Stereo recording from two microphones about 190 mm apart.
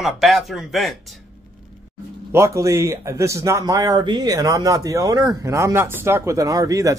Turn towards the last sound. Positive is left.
turn(degrees=-20)  # may be behind; listen again after turning